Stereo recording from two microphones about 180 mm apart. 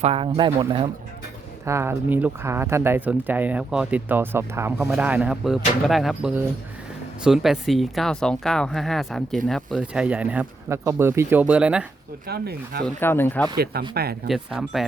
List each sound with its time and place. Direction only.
0.0 s speech: 30° right (ahead or behind)
1.6 s speech: 15° right (ahead or behind)
12.3 s speech: 60° right (ahead or behind)
13.0 s speech: 10° left (ahead or behind)
13.9 s speech: 60° right (ahead or behind)
14.3 s speech: centre (ahead or behind)